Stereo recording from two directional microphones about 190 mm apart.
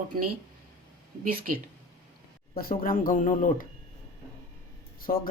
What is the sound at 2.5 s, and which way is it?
Speech, 50° left (ahead or behind).